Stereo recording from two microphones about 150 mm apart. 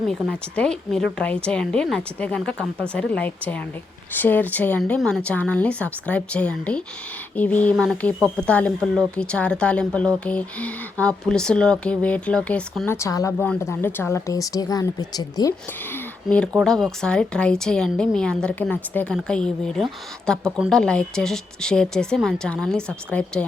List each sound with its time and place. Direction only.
0.1 s speech: 5° left (ahead or behind); by 15.5 s 25° left (ahead or behind)
15.9 s a sound: 10° left (ahead or behind)
16.6 s a woman's voice: 5° left (ahead or behind)